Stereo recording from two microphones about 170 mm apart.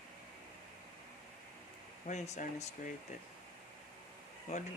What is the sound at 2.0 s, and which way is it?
Speech, 45° left (ahead or behind).